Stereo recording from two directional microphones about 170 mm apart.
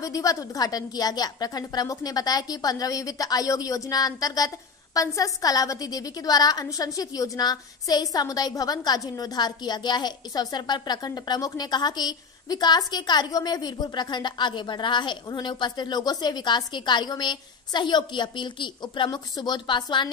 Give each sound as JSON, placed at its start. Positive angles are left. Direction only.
{"t": 0.0, "sound": "a woman's voice", "side_deg": 20}